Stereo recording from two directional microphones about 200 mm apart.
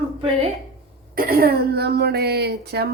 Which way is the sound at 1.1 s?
45° right (ahead or behind).